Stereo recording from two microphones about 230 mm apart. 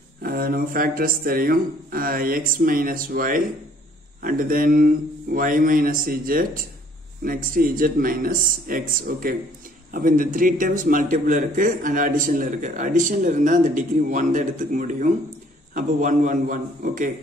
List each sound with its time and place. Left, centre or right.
0.2 s a man's voice: right